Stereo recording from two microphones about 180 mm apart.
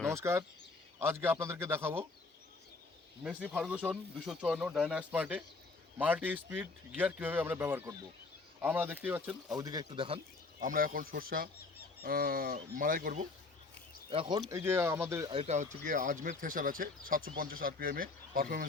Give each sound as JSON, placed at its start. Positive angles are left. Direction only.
{"t": 0.0, "sound": "speech", "side_deg": -15}
{"t": 3.2, "sound": "speech", "side_deg": -5}
{"t": 9.5, "sound": "speech", "side_deg": -20}
{"t": 10.6, "sound": "speech", "side_deg": -50}
{"t": 14.1, "sound": "speech", "side_deg": -25}
{"t": 14.5, "sound": "speech", "side_deg": -15}
{"t": 15.3, "sound": "speech", "side_deg": -35}